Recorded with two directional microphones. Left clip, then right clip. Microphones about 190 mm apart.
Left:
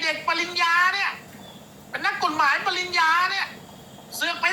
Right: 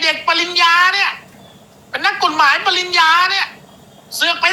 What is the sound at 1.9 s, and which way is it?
A woman's voice, 30° right (ahead or behind).